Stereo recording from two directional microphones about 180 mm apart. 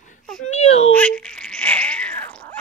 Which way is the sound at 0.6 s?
35° left (ahead or behind).